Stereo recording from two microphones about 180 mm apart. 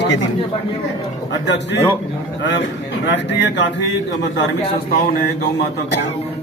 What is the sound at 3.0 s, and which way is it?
Speech, 80° left.